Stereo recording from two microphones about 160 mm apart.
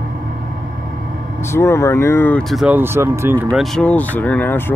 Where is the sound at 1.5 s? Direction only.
15° left (ahead or behind).